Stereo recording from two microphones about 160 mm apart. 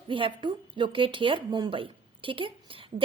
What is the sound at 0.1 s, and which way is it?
Speech, 30° right (ahead or behind).